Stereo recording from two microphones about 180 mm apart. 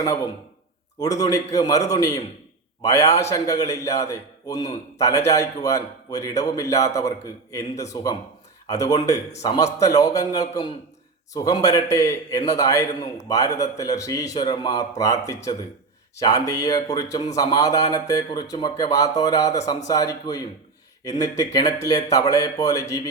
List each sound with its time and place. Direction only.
0.9 s a man's voice: 20° left (ahead or behind)